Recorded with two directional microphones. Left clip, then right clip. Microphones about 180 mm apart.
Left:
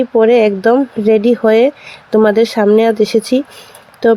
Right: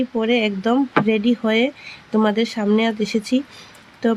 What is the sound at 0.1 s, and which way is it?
Speech, 25° left (ahead or behind).